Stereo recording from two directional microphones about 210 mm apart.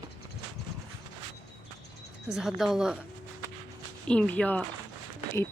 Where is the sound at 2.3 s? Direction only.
Centre (ahead or behind).